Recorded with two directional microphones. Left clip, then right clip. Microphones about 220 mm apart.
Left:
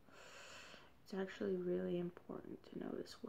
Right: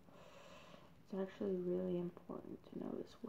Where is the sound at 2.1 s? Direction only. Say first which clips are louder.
Right 1 dB; 45° left (ahead or behind).